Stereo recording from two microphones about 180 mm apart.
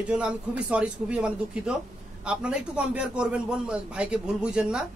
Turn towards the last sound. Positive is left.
turn(degrees=-5)  # may be behind; listen again after turning